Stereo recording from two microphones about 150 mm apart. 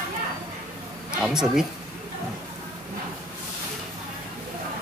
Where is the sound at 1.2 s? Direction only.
5° right (ahead or behind).